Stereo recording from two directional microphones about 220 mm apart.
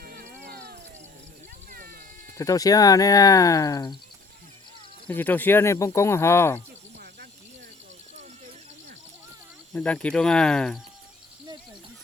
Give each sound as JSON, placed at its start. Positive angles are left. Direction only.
{"t": 0.0, "sound": "cat", "side_deg": -45}
{"t": 0.4, "sound": "a sound", "side_deg": -45}
{"t": 2.4, "sound": "speech", "side_deg": 15}
{"t": 5.0, "sound": "speech", "side_deg": 10}
{"t": 9.7, "sound": "speech", "side_deg": 5}